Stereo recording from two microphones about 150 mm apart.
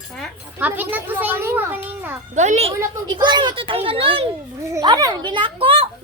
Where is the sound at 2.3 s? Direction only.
50° right (ahead or behind).